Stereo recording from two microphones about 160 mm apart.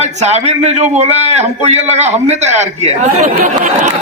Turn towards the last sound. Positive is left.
turn(degrees=-50)  # may be behind; listen again after turning